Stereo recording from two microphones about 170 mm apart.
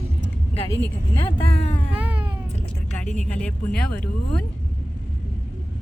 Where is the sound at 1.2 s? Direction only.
35° left (ahead or behind).